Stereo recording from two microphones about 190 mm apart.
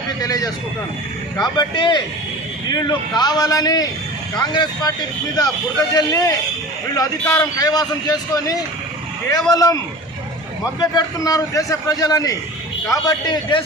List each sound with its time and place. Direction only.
0.2 s a man's voice: 20° left (ahead or behind)